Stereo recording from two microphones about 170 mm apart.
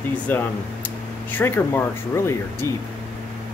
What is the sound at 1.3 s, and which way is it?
Speech, 10° left (ahead or behind).